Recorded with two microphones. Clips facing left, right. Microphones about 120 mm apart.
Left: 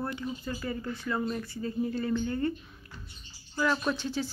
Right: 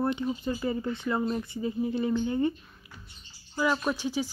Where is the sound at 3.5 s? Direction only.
10° right (ahead or behind).